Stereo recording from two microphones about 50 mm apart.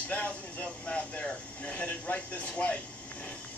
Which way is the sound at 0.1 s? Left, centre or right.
Left.